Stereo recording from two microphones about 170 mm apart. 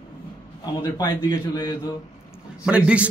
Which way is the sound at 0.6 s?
25° left (ahead or behind).